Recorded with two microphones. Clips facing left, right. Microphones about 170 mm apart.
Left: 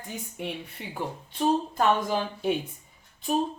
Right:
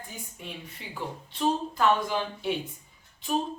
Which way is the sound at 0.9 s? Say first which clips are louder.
Left 3 dB; 50° left (ahead or behind).